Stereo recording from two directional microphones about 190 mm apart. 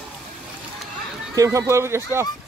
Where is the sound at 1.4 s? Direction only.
15° right (ahead or behind).